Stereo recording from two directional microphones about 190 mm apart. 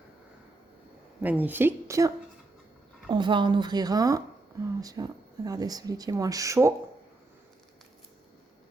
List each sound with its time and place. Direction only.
1.2 s a woman's voice: 10° right (ahead or behind)